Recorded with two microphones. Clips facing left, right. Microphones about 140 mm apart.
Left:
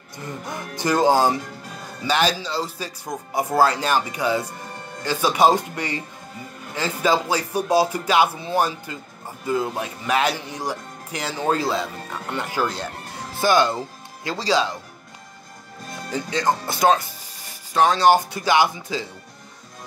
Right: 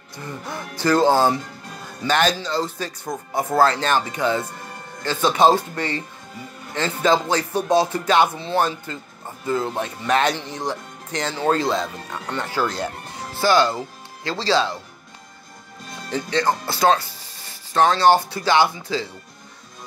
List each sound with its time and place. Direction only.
0.5 s speech: 15° left (ahead or behind)
16.1 s speech: 10° left (ahead or behind)